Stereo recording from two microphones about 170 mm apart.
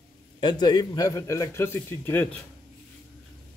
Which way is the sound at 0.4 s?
25° left (ahead or behind).